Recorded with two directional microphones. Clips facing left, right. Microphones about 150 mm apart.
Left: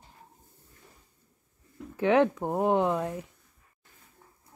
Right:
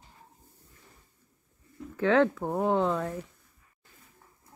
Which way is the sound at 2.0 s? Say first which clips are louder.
Left 1 dB; 15° left (ahead or behind).